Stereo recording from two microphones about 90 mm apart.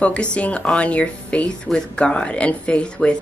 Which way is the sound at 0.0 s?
15° left (ahead or behind).